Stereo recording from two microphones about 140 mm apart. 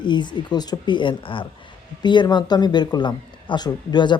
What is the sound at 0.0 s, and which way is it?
Speech, 35° left (ahead or behind).